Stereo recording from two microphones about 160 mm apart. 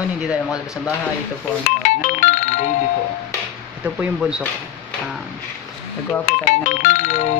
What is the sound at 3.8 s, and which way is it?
Speech, 5° right (ahead or behind).